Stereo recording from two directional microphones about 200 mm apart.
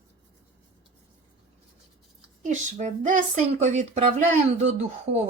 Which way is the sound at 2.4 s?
40° right (ahead or behind).